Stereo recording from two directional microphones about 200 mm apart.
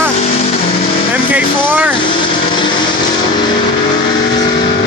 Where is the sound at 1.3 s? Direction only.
5° right (ahead or behind).